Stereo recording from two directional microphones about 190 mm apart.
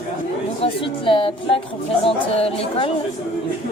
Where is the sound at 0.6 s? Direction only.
25° left (ahead or behind).